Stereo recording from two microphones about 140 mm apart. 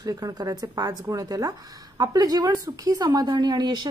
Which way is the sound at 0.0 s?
25° right (ahead or behind).